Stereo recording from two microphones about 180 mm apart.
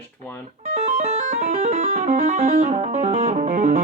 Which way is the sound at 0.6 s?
35° right (ahead or behind).